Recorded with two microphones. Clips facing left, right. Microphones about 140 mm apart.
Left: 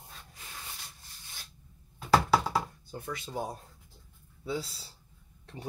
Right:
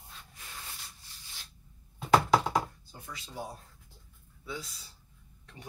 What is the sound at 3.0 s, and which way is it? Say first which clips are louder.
Speech: left 5 dB; 55° left (ahead or behind).